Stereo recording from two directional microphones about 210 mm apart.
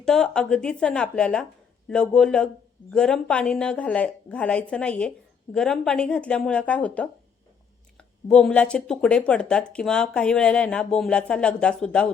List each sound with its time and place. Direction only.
0.0 s speech: 5° left (ahead or behind)